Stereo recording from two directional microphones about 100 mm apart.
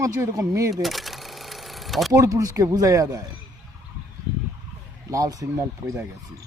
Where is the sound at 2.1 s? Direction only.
35° right (ahead or behind).